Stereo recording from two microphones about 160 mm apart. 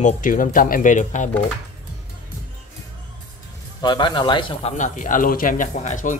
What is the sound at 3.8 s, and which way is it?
Speech, 30° left (ahead or behind).